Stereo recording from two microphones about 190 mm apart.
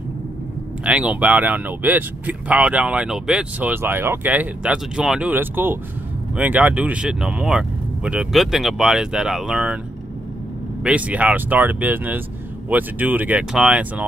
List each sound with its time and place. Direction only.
0.8 s speech: 5° right (ahead or behind)
10.8 s speech: 5° right (ahead or behind)